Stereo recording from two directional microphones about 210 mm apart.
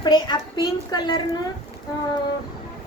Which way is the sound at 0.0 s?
20° left (ahead or behind).